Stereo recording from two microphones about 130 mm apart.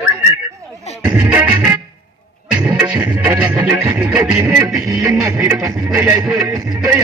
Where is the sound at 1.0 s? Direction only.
15° right (ahead or behind).